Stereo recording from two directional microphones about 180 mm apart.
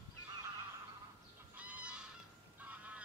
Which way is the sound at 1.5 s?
5° right (ahead or behind).